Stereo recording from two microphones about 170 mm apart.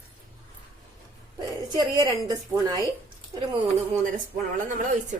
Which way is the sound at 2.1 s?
20° right (ahead or behind).